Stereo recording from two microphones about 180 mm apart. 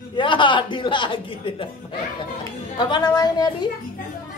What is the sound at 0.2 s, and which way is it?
A man's voice, 25° left (ahead or behind).